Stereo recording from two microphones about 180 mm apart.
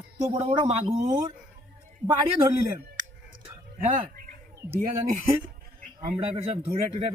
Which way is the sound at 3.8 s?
45° right (ahead or behind).